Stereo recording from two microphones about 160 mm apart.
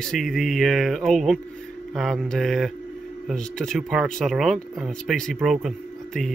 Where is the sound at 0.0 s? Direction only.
5° left (ahead or behind).